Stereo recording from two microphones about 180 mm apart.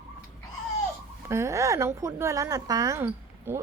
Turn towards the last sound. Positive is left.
turn(degrees=-15)  # may be behind; listen again after turning